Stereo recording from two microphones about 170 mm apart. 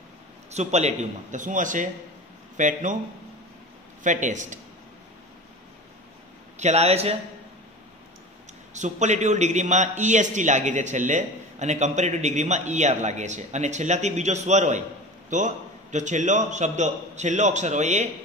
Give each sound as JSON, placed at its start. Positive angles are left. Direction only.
{"t": 0.5, "sound": "a man's voice", "side_deg": -40}
{"t": 4.0, "sound": "a man's voice", "side_deg": -45}
{"t": 6.6, "sound": "a man's voice", "side_deg": -40}
{"t": 8.7, "sound": "a man's voice", "side_deg": -45}